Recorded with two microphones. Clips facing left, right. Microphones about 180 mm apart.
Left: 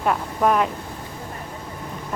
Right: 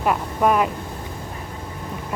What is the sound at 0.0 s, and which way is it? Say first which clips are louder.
Speech: right 1 dB; 5° right (ahead or behind).